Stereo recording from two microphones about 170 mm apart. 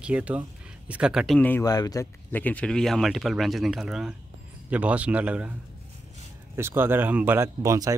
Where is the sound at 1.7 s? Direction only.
20° left (ahead or behind).